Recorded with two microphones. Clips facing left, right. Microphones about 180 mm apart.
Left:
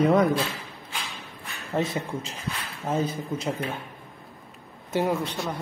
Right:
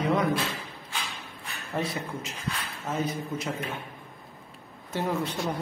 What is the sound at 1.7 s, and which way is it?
A woman's voice, 25° left (ahead or behind).